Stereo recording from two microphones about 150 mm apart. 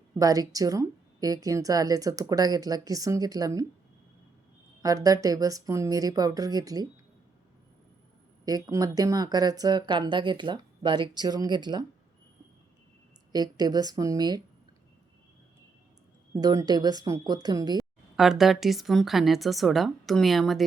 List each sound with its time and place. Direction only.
0.1 s speech: 25° right (ahead or behind)
4.8 s speech: 25° right (ahead or behind)
8.4 s speech: 25° right (ahead or behind)
13.3 s speech: 25° right (ahead or behind)
16.3 s speech: 20° right (ahead or behind)
18.2 s a woman's voice: centre (ahead or behind)